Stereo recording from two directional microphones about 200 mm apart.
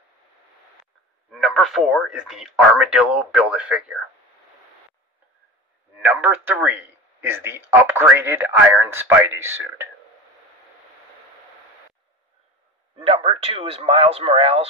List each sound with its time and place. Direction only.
1.3 s speech: centre (ahead or behind)
5.9 s speech: 10° right (ahead or behind)
12.9 s a man's voice: 25° right (ahead or behind)